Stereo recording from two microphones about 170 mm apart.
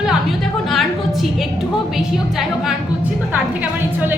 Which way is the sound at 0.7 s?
Centre (ahead or behind).